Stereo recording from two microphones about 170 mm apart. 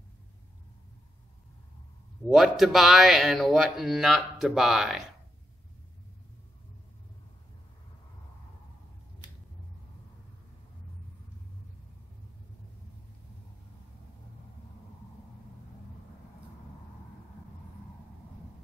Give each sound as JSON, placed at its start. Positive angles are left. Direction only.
{"t": 2.2, "sound": "speech", "side_deg": 0}